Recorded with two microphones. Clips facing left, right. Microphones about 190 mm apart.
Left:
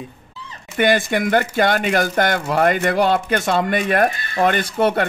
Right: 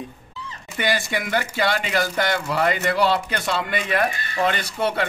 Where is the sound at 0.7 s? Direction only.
55° left (ahead or behind).